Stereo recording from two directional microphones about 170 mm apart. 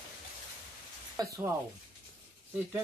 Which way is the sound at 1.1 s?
15° right (ahead or behind).